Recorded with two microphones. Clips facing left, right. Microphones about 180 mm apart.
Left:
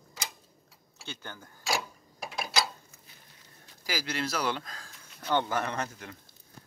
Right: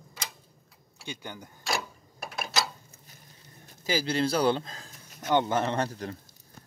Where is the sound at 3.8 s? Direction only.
25° right (ahead or behind).